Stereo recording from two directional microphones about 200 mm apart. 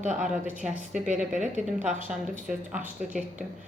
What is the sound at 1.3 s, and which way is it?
Speech, 40° right (ahead or behind).